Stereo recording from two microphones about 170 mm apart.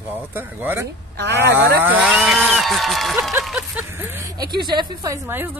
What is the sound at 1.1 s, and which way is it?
Speech, 90° right.